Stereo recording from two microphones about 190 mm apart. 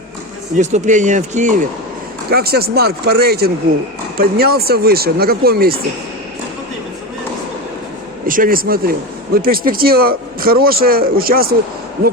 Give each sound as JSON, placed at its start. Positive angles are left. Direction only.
{"t": 0.6, "sound": "speech", "side_deg": -40}
{"t": 2.3, "sound": "speech", "side_deg": -55}
{"t": 8.3, "sound": "speech", "side_deg": -50}